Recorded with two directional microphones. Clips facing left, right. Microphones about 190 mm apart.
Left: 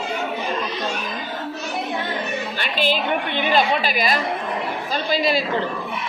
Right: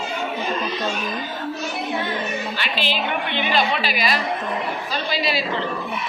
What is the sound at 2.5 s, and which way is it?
A woman's voice, 50° left (ahead or behind).